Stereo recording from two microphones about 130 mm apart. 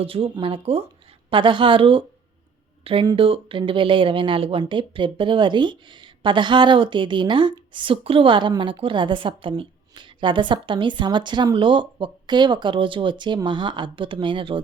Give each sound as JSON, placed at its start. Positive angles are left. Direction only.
{"t": 0.0, "sound": "a woman's voice", "side_deg": -45}